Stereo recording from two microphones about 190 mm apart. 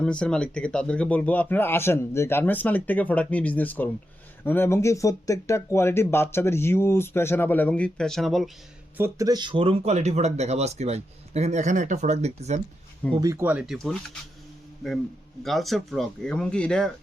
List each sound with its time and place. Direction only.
0.0 s speech: 5° left (ahead or behind)
9.0 s speech: 15° right (ahead or behind); by 12.6 s 35° right (ahead or behind)
13.1 s speech: 15° right (ahead or behind); by 16.9 s 5° left (ahead or behind)